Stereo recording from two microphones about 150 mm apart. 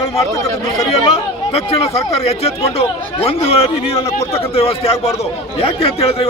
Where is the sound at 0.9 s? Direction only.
40° left (ahead or behind).